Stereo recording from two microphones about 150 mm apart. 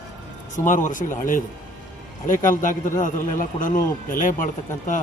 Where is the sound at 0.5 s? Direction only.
60° left (ahead or behind).